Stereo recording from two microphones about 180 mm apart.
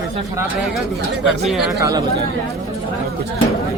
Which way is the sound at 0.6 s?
Centre (ahead or behind).